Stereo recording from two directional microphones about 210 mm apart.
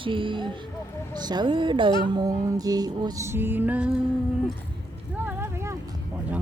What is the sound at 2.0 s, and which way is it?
Music, 20° right (ahead or behind).